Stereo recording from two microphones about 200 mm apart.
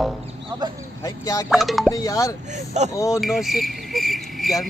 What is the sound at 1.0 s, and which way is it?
Speech, 15° left (ahead or behind).